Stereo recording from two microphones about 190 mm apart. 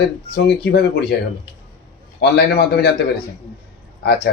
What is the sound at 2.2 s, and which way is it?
Speech, 55° left (ahead or behind).